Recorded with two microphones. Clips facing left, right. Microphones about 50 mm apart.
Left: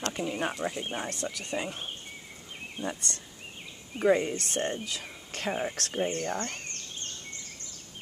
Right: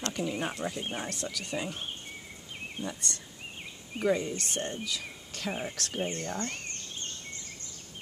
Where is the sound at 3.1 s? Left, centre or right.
Left.